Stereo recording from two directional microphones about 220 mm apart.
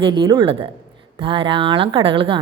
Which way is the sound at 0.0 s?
20° right (ahead or behind).